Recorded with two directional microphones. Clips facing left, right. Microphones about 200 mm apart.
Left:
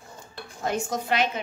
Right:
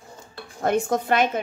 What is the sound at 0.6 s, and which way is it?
Dishes, 55° right (ahead or behind).